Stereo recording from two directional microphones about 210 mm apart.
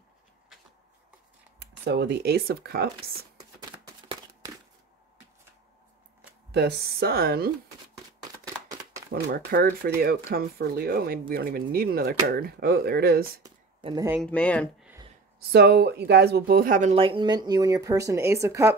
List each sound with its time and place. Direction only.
1.6 s speech: 55° right (ahead or behind)
3.0 s a sound: 20° right (ahead or behind)
6.5 s speech: 50° right (ahead or behind)
9.1 s speech: 45° right (ahead or behind)
13.4 s a sound: 20° right (ahead or behind)
14.2 s speech: 5° left (ahead or behind)
15.5 s speech: 50° right (ahead or behind); by 18.8 s 15° right (ahead or behind)